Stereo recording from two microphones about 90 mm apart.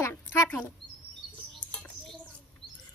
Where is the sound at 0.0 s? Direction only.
30° left (ahead or behind).